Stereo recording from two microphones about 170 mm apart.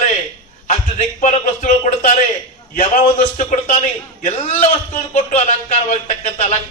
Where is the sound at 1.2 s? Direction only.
50° left (ahead or behind).